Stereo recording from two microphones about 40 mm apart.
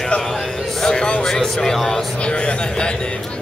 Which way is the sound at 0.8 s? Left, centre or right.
Centre.